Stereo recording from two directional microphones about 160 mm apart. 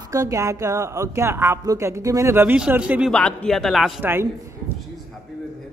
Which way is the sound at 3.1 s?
5° left (ahead or behind).